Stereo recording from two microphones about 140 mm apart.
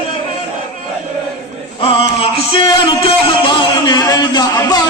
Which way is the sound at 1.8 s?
40° left (ahead or behind).